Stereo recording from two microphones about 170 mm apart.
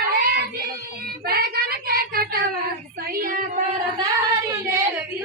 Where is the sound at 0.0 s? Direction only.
70° right (ahead or behind).